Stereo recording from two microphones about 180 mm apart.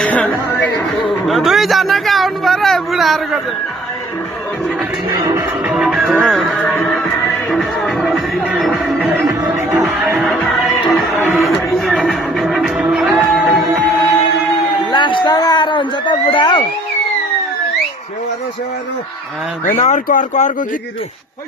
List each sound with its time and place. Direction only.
0.0 s music: 5° left (ahead or behind)
5.6 s music: centre (ahead or behind)
10.2 s music: centre (ahead or behind)
14.9 s a sound: 25° left (ahead or behind)
19.6 s speech: 40° left (ahead or behind)